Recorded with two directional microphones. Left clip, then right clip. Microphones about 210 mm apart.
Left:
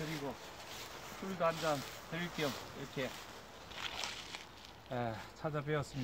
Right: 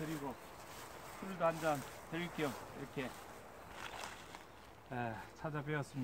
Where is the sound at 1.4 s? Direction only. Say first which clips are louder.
Left 1 dB; 25° left (ahead or behind).